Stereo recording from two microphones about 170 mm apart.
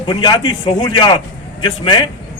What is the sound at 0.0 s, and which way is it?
A man's voice, 25° left (ahead or behind).